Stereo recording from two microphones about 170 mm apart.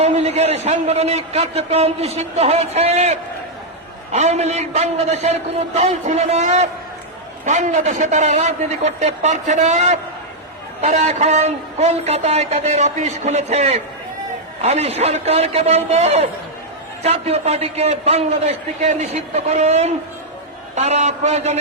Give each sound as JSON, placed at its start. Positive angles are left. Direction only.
{"t": 0.0, "sound": "a man's voice", "side_deg": -40}